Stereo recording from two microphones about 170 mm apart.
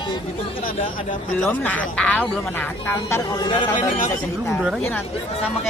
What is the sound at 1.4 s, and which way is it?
Speech, 10° left (ahead or behind).